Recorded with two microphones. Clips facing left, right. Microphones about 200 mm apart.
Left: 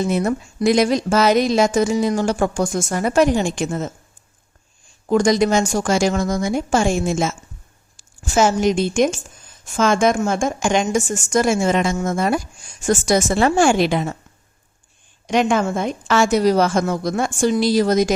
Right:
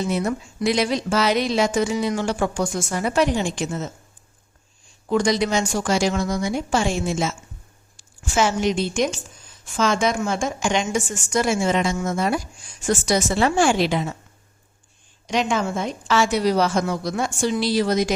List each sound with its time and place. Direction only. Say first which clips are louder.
0.1 s a woman's voice: left 4 dB; 50° left (ahead or behind)
5.0 s a woman's voice: left 4 dB; 45° left (ahead or behind)
15.3 s a woman's voice: left 5 dB; 50° left (ahead or behind)